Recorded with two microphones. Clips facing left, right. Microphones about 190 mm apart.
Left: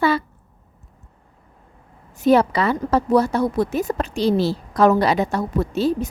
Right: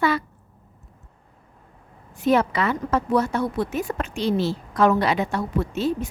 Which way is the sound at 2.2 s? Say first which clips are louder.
Left 4 dB; 35° left (ahead or behind).